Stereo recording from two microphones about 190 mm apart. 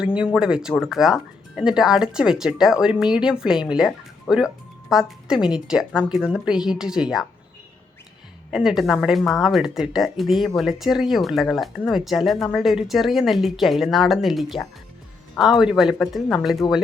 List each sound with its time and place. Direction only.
0.0 s speech: 5° right (ahead or behind)
8.4 s speech: 5° right (ahead or behind)